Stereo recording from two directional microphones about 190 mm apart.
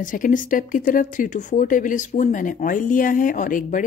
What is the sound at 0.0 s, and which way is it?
Speech, 45° left (ahead or behind).